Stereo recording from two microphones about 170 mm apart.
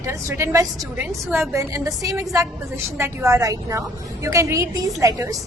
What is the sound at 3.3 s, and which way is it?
A woman's voice, 20° right (ahead or behind).